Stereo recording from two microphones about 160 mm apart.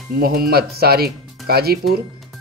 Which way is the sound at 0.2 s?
70° right (ahead or behind).